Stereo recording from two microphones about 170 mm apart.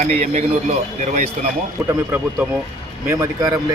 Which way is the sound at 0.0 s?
40° right (ahead or behind).